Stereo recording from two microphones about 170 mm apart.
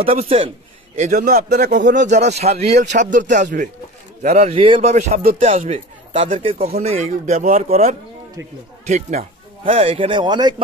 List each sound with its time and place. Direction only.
0.0 s speech: 35° right (ahead or behind)
0.9 s a man's voice: 45° right (ahead or behind)
4.4 s speech: 35° right (ahead or behind)
4.9 s a man's voice: 45° right (ahead or behind)
8.4 s speech: 15° right (ahead or behind)
8.8 s a man's voice: 45° right (ahead or behind); by 10.5 s 25° right (ahead or behind)